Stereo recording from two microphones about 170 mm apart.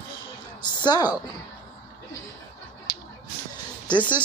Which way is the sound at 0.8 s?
25° left (ahead or behind).